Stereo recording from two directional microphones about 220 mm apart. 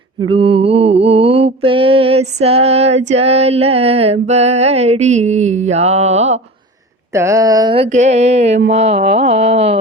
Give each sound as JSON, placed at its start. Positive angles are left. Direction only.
{"t": 0.2, "sound": "mantra", "side_deg": -25}
{"t": 7.1, "sound": "mantra", "side_deg": -15}
{"t": 8.7, "sound": "a sound", "side_deg": -30}